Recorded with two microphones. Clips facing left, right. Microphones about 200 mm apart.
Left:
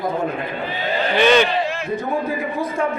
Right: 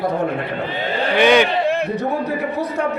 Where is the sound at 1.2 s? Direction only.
15° right (ahead or behind).